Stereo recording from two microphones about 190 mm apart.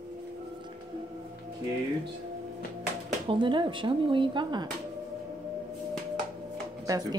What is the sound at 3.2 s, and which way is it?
Speech, 25° right (ahead or behind).